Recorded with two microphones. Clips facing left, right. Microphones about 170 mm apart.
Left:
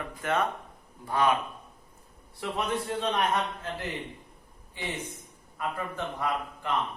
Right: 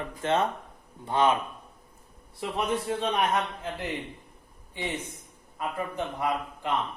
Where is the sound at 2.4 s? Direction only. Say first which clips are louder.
Right 2 dB; 15° right (ahead or behind).